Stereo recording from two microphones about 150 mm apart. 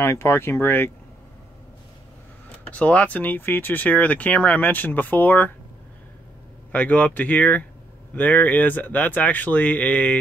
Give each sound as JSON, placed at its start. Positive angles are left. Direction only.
{"t": 0.0, "sound": "speech", "side_deg": 15}
{"t": 2.7, "sound": "speech", "side_deg": 10}
{"t": 6.7, "sound": "speech", "side_deg": 10}